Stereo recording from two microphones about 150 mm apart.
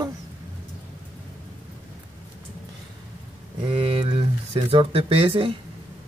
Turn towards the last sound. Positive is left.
turn(degrees=-35)  # may be behind; listen again after turning